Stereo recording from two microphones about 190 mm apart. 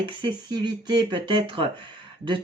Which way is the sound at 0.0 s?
25° right (ahead or behind).